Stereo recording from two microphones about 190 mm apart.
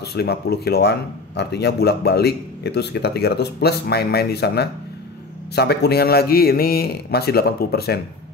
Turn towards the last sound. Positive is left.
turn(degrees=55)  # may be behind; listen again after turning